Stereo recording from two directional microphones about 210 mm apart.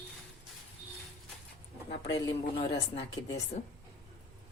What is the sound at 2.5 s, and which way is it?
Speech, 30° left (ahead or behind).